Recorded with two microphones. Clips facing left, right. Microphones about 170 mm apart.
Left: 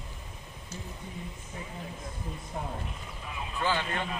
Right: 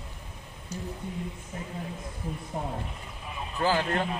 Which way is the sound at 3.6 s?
40° right (ahead or behind).